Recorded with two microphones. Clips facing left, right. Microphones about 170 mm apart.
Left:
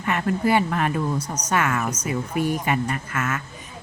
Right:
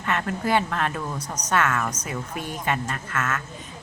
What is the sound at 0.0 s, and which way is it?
Speech, 5° left (ahead or behind).